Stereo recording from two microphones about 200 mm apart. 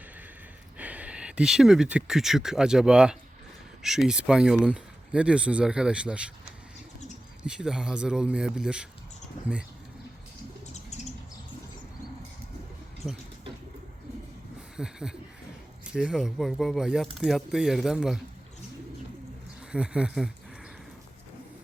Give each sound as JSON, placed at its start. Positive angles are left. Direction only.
{"t": 0.8, "sound": "speech", "side_deg": -5}
{"t": 7.4, "sound": "speech", "side_deg": -5}
{"t": 10.8, "sound": "bird", "side_deg": 35}
{"t": 14.8, "sound": "a sound", "side_deg": -5}
{"t": 15.8, "sound": "speech", "side_deg": -5}
{"t": 19.7, "sound": "speech", "side_deg": -5}